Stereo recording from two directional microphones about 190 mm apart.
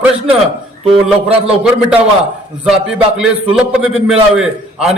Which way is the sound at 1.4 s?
5° right (ahead or behind).